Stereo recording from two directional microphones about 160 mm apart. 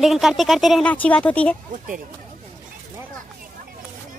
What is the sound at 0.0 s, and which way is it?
A woman's voice, centre (ahead or behind).